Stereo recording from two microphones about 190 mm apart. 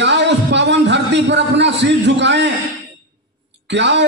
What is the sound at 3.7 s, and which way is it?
Speech, 65° right (ahead or behind).